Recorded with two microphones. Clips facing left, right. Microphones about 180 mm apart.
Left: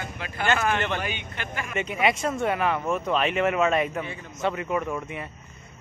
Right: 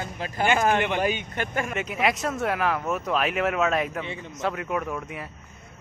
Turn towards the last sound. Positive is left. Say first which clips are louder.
# left 1 dB
turn(degrees=0)  # may be behind; listen again after turning